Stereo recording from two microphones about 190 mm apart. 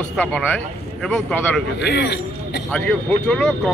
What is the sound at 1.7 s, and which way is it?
Speech, 60° left (ahead or behind).